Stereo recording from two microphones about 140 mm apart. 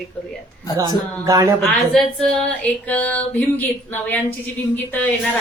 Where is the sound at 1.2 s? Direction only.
25° right (ahead or behind).